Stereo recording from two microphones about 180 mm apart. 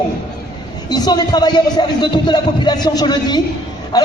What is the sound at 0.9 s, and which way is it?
Speech, 20° left (ahead or behind).